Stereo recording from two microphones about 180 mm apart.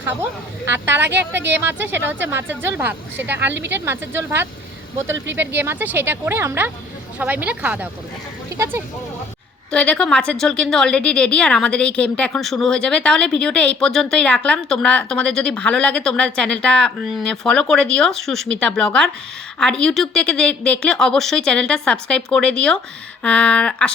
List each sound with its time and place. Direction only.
0.0 s speech: 10° right (ahead or behind)
9.7 s a woman's voice: 5° left (ahead or behind)